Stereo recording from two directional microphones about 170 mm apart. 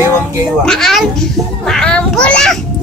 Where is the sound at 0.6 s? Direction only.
Centre (ahead or behind).